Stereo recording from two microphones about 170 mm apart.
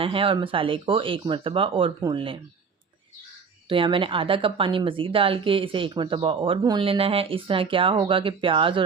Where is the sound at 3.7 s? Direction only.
30° right (ahead or behind).